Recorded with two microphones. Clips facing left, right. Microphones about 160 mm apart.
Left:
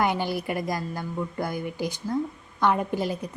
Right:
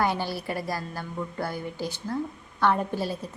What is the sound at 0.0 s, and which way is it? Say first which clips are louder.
A woman's voice: left 2 dB; 15° left (ahead or behind).